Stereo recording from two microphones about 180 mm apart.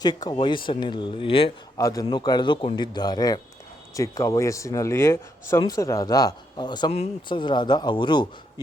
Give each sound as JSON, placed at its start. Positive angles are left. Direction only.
{"t": 0.0, "sound": "speech", "side_deg": 20}
{"t": 1.8, "sound": "speech", "side_deg": 20}